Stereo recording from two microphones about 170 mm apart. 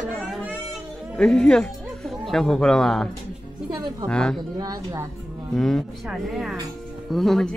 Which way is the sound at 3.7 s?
25° right (ahead or behind).